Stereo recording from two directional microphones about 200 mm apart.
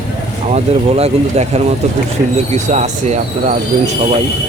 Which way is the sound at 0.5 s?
30° right (ahead or behind).